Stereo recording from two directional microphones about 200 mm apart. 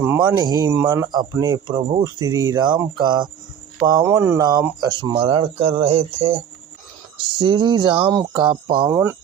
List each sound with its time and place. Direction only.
0.0 s speech: 15° right (ahead or behind)
8.9 s speech: 15° right (ahead or behind)